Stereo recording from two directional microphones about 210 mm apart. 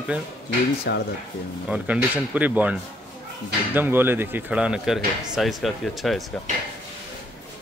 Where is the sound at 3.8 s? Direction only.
10° right (ahead or behind).